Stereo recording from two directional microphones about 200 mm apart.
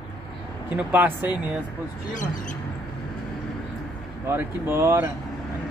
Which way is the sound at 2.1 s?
40° left (ahead or behind).